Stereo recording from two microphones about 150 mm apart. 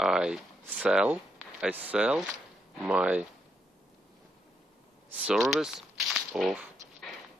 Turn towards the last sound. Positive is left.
turn(degrees=-5)  # may be behind; listen again after turning